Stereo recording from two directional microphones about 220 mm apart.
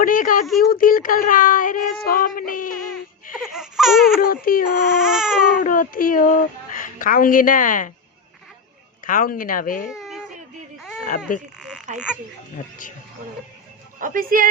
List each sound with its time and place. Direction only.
0.0 s a woman's voice: 40° left (ahead or behind)
3.5 s baby cry: centre (ahead or behind)
4.2 s a woman's voice: 40° left (ahead or behind)
4.9 s baby cry: centre (ahead or behind)
5.5 s a woman's voice: 40° left (ahead or behind)
9.0 s a woman's voice: 40° left (ahead or behind)
9.9 s baby cry: centre (ahead or behind)
11.9 s speech: 35° right (ahead or behind)
14.0 s speech: 40° right (ahead or behind)